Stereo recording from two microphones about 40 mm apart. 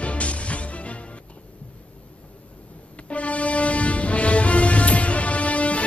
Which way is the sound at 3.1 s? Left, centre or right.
Left.